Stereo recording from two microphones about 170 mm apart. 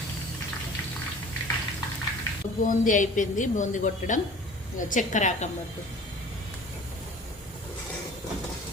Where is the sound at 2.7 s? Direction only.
50° left (ahead or behind).